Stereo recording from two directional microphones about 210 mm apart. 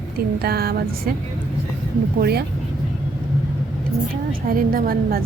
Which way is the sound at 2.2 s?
50° right (ahead or behind).